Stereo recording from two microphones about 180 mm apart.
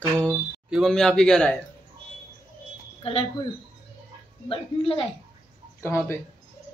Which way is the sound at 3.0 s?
30° left (ahead or behind).